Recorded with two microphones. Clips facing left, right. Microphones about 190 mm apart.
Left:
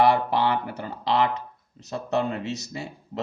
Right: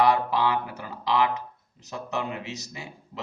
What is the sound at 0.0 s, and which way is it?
A man's voice, 65° left (ahead or behind).